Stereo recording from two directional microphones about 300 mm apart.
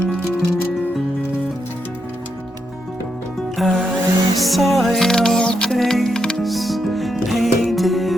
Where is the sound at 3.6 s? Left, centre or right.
Centre.